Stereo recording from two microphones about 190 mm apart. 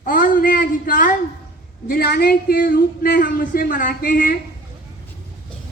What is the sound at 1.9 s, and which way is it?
A woman's voice, 55° left (ahead or behind).